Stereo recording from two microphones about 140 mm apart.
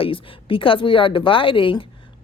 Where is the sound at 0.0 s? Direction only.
40° left (ahead or behind).